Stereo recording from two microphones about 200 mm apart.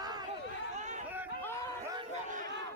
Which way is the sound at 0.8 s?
35° right (ahead or behind).